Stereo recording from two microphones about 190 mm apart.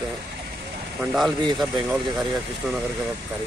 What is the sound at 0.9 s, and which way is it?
Speech, centre (ahead or behind).